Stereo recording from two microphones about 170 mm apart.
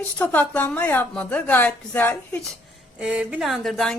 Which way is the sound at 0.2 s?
10° left (ahead or behind).